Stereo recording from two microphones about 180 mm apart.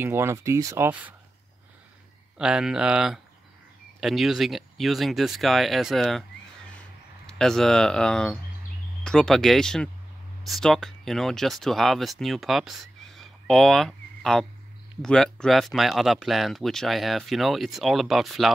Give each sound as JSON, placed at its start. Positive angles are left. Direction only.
{"t": 0.0, "sound": "speech", "side_deg": -15}
{"t": 2.3, "sound": "speech", "side_deg": -5}
{"t": 7.2, "sound": "speech", "side_deg": 5}